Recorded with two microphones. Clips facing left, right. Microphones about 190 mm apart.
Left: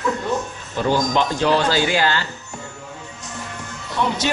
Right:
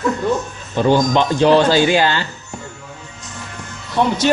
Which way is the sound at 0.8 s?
20° right (ahead or behind).